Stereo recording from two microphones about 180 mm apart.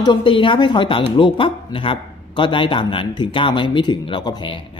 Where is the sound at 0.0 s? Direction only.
25° left (ahead or behind).